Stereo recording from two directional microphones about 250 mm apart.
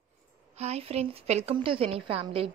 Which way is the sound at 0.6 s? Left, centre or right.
Right.